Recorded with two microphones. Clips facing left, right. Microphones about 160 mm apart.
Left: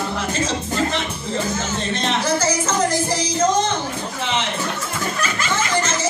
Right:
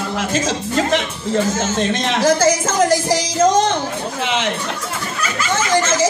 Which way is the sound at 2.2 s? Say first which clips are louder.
Right 8 dB; 90° right.